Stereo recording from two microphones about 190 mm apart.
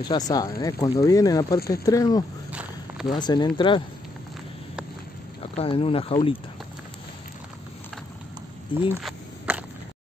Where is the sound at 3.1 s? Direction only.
25° left (ahead or behind).